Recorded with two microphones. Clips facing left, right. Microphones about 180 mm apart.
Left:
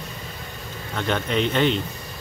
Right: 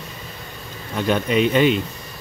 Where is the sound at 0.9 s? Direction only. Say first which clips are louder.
Right 5 dB; 10° right (ahead or behind).